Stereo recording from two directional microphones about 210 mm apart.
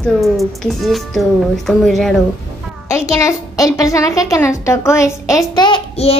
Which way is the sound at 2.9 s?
15° left (ahead or behind).